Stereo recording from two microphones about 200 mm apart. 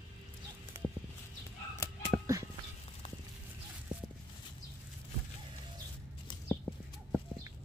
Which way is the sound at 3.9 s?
5° right (ahead or behind).